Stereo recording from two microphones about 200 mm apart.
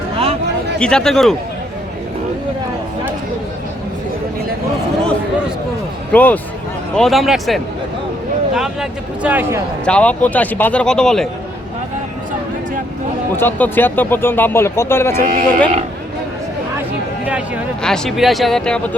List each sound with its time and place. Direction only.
0.8 s speech: 5° left (ahead or behind)
6.1 s a man's voice: 10° left (ahead or behind); by 9.6 s 10° right (ahead or behind)
9.8 s speech: 5° left (ahead or behind)
13.3 s speech: 10° left (ahead or behind)
15.3 s speech: 45° right (ahead or behind)
17.8 s speech: 5° left (ahead or behind)